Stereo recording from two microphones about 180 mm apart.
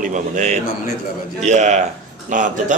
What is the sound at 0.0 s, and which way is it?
A man's voice, 40° right (ahead or behind).